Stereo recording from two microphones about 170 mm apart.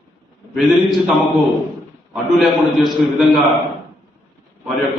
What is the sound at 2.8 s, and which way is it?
Speech, centre (ahead or behind).